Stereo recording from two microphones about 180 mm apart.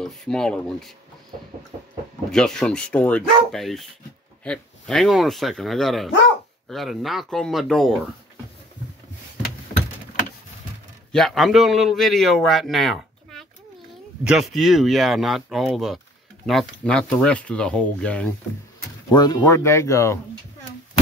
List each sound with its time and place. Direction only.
0.0 s speech: 5° left (ahead or behind)
2.3 s speech: 5° left (ahead or behind)
11.1 s a man's voice: centre (ahead or behind)
19.0 s speech: 20° left (ahead or behind)